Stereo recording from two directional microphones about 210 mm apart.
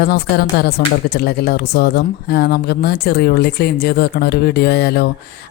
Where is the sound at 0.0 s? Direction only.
50° left (ahead or behind).